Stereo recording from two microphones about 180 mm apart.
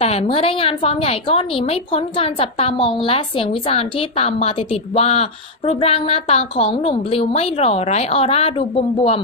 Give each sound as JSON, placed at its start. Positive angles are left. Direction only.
{"t": 0.0, "sound": "a woman's voice", "side_deg": 30}